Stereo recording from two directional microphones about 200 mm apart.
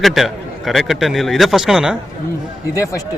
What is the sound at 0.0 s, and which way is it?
A man's voice, centre (ahead or behind).